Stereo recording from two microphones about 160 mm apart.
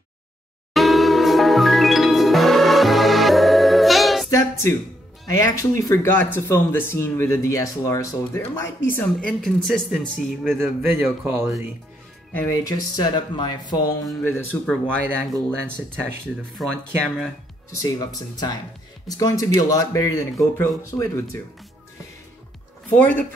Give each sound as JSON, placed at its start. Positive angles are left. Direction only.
{"t": 0.7, "sound": "music", "side_deg": 0}
{"t": 4.3, "sound": "music", "side_deg": 20}
{"t": 5.3, "sound": "speech", "side_deg": 20}
{"t": 10.6, "sound": "speech", "side_deg": -15}
{"t": 12.4, "sound": "speech", "side_deg": 20}
{"t": 14.2, "sound": "speech", "side_deg": 15}
{"t": 16.6, "sound": "speech", "side_deg": 0}
{"t": 17.9, "sound": "speech", "side_deg": 25}
{"t": 22.8, "sound": "speech", "side_deg": 10}